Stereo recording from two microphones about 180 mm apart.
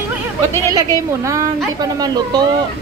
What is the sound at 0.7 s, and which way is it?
A woman's voice, 15° right (ahead or behind).